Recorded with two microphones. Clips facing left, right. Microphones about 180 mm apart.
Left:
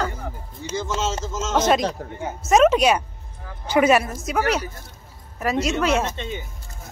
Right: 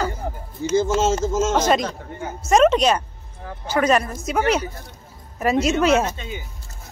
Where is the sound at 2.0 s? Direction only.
45° left (ahead or behind).